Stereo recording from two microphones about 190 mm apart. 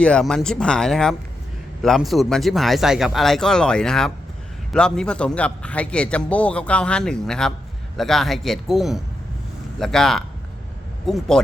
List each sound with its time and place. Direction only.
0.0 s a man's voice: 5° left (ahead or behind)